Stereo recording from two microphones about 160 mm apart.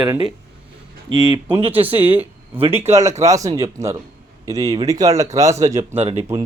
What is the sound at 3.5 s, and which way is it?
Speech, 15° right (ahead or behind).